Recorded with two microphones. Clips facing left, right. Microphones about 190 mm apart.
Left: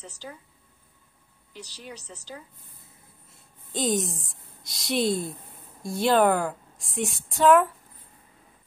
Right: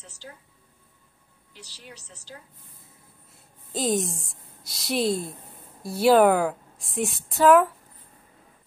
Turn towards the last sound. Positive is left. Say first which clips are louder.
# right 2 dB
turn(degrees=0)  # may be behind; listen again after turning